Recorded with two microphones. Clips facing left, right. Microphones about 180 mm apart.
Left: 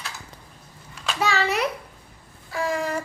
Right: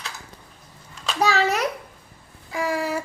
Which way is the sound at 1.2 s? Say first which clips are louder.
Right 3 dB; 40° right (ahead or behind).